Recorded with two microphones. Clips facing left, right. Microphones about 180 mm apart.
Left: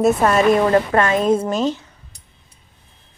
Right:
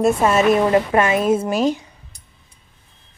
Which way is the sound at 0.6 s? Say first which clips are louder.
Even; 15° right (ahead or behind).